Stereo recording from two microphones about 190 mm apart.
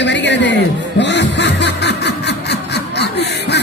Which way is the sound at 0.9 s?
65° left (ahead or behind).